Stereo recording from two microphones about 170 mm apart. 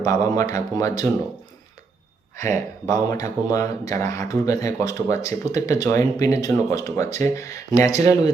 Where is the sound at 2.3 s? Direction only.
15° left (ahead or behind).